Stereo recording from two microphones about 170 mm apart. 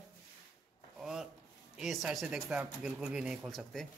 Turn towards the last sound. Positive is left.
turn(degrees=0)  # may be behind; listen again after turning